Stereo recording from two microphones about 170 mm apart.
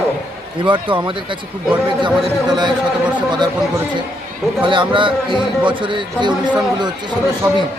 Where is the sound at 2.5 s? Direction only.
25° right (ahead or behind).